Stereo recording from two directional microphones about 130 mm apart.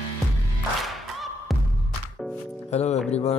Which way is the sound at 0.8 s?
Centre (ahead or behind).